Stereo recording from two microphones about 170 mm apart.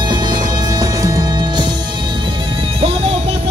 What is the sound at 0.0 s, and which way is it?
Music, 25° right (ahead or behind).